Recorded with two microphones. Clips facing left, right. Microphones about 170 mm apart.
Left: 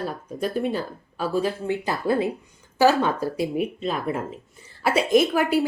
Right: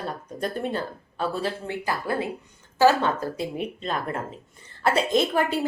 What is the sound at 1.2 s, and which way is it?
A woman's voice, 15° left (ahead or behind).